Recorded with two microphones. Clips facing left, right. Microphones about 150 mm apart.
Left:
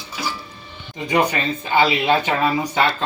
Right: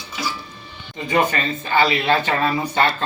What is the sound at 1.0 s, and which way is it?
Speech, 20° left (ahead or behind).